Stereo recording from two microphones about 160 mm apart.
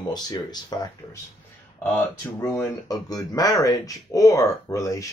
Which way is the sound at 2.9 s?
25° left (ahead or behind).